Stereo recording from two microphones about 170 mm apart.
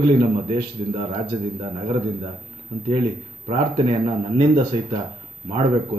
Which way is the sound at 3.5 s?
35° right (ahead or behind).